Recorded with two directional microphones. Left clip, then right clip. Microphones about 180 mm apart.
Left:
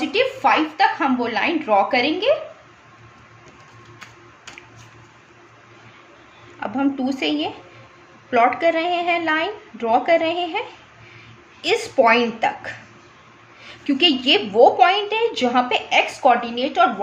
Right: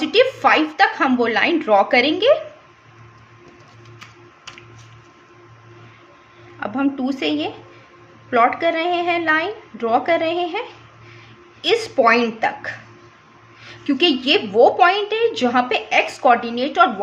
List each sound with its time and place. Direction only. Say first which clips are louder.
0.0 s a woman's voice: right 3 dB; 45° right (ahead or behind)
6.6 s a woman's voice: right 1 dB; 15° right (ahead or behind)
11.6 s a woman's voice: right 1 dB; 15° right (ahead or behind)